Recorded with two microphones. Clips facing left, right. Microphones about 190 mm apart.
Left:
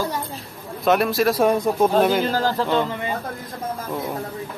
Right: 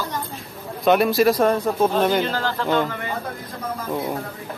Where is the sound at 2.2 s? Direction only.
40° left (ahead or behind).